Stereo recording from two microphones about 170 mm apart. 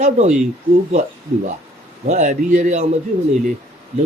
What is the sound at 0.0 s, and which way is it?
Speech, 40° right (ahead or behind).